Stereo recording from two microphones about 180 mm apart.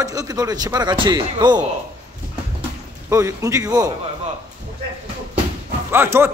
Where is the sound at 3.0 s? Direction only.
15° right (ahead or behind).